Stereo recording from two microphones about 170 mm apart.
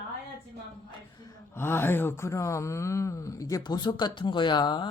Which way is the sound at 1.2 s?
15° left (ahead or behind).